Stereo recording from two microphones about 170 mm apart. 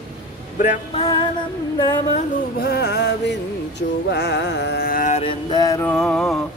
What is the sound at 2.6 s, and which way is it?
Speech, 65° left (ahead or behind).